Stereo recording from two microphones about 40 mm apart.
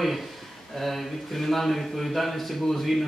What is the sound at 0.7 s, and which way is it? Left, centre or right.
Speech, centre.